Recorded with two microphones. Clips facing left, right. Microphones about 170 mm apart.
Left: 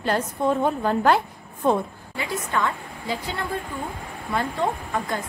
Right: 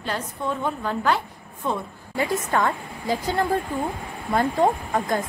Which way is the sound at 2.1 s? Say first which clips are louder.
Right 4 dB; 40° right (ahead or behind).